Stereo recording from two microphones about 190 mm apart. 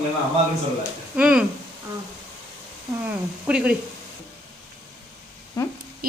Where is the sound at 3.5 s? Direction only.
5° right (ahead or behind).